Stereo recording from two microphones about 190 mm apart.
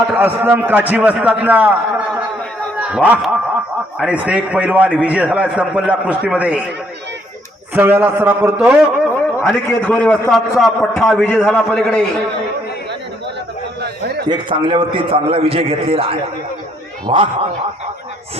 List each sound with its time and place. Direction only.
0.1 s a man's voice: 10° right (ahead or behind)
7.7 s a man's voice: 10° right (ahead or behind)
9.1 s a man's voice: 10° left (ahead or behind)
14.3 s a man's voice: 25° right (ahead or behind)